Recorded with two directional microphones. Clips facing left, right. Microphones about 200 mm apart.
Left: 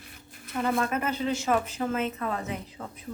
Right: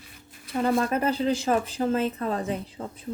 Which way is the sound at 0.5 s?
35° right (ahead or behind).